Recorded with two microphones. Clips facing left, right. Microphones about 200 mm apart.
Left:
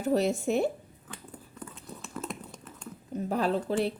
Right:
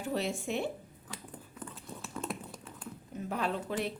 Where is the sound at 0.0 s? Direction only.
40° left (ahead or behind).